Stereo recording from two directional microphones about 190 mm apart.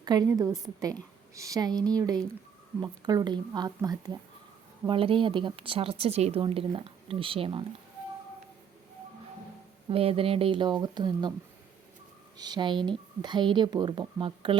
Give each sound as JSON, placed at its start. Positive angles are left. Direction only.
{"t": 0.0, "sound": "speech", "side_deg": -20}
{"t": 9.9, "sound": "speech", "side_deg": -30}
{"t": 12.4, "sound": "speech", "side_deg": -20}